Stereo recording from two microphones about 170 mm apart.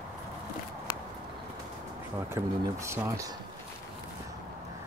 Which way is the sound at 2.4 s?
15° right (ahead or behind).